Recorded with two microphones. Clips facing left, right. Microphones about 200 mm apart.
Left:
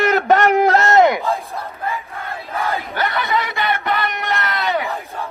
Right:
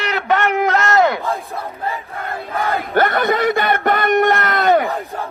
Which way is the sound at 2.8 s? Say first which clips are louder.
Right 6 dB; 50° right (ahead or behind).